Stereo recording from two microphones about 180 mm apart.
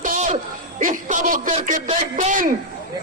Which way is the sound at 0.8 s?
45° right (ahead or behind).